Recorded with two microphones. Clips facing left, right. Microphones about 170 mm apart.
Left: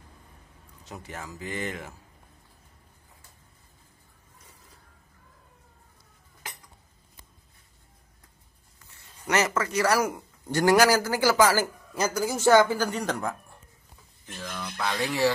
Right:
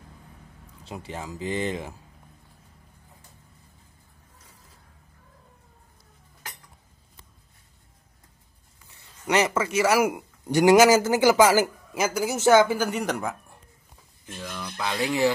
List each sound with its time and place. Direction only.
1.0 s speech: 20° right (ahead or behind)
9.0 s a sound: 15° right (ahead or behind)
9.8 s speech: 15° right (ahead or behind)
14.4 s speech: 10° right (ahead or behind)